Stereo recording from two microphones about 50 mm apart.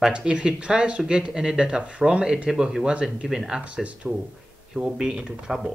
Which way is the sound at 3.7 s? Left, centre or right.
Right.